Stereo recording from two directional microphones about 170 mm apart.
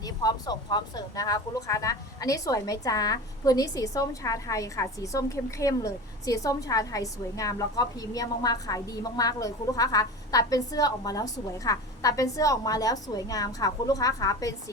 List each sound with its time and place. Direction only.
0.0 s speech: 25° left (ahead or behind)